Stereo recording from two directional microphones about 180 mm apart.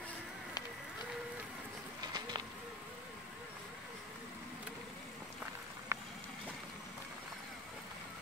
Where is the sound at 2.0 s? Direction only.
25° right (ahead or behind).